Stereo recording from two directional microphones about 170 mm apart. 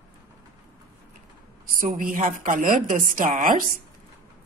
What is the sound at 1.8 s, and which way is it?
A woman's voice, 55° right (ahead or behind).